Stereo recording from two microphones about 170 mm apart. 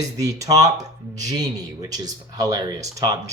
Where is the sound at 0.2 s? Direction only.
20° right (ahead or behind).